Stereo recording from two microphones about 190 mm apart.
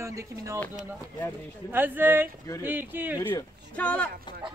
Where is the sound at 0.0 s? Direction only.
15° right (ahead or behind).